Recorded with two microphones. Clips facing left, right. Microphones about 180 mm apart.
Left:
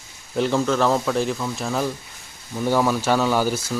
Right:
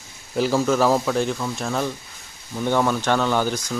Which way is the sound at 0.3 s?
5° right (ahead or behind).